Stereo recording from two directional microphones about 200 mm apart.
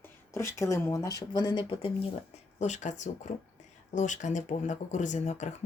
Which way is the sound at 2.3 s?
35° left (ahead or behind).